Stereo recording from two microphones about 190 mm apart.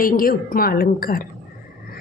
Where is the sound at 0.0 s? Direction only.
50° left (ahead or behind).